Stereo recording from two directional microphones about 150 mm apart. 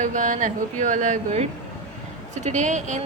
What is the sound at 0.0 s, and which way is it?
Speech, 55° right (ahead or behind).